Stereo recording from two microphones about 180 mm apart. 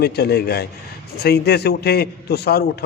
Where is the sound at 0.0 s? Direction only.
60° left (ahead or behind).